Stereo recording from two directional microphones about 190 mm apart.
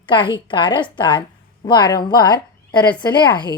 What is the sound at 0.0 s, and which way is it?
A woman's voice, 25° left (ahead or behind).